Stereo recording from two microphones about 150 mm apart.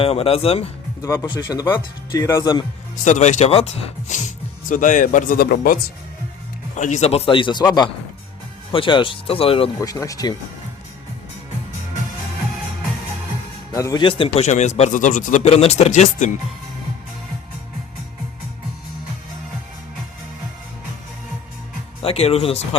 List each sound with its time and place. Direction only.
0.0 s a man's voice: 40° left (ahead or behind)
1.0 s speech: 20° left (ahead or behind)
2.9 s speech: 55° left (ahead or behind)
4.7 s speech: 60° left (ahead or behind); by 5.8 s 80° left
6.7 s a man's voice: 55° left (ahead or behind); by 9.6 s 40° left (ahead or behind)
9.8 s speech: 25° left (ahead or behind)
13.7 s speech: 20° left (ahead or behind)
14.0 s speech: 35° left (ahead or behind); by 16.3 s 55° left (ahead or behind)
22.0 s a man's voice: 40° left (ahead or behind)